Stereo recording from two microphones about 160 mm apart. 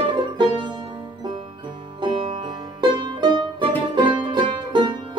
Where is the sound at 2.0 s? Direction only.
30° right (ahead or behind).